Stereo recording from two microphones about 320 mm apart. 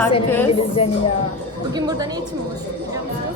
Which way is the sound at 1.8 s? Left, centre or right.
Centre.